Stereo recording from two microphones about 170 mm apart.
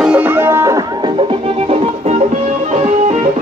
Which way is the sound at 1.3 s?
35° right (ahead or behind).